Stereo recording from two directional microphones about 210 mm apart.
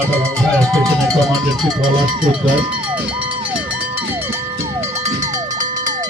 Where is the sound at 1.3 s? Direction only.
20° right (ahead or behind).